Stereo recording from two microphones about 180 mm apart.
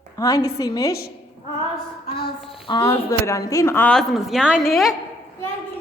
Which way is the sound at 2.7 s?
20° left (ahead or behind).